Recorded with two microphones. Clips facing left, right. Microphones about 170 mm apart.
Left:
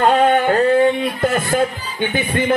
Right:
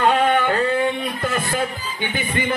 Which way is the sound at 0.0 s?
45° left (ahead or behind).